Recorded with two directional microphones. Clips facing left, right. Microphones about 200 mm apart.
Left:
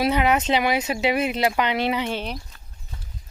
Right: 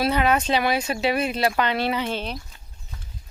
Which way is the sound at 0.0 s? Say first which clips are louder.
Left 1 dB; 15° left (ahead or behind).